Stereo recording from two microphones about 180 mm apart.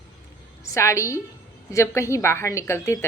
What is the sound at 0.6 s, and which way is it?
Speech, 15° left (ahead or behind).